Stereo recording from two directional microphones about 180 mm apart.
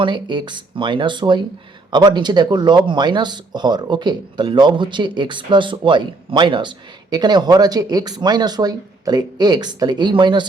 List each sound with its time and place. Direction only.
0.0 s speech: 25° right (ahead or behind)